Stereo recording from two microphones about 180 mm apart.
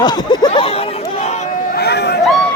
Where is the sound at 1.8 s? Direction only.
65° left (ahead or behind).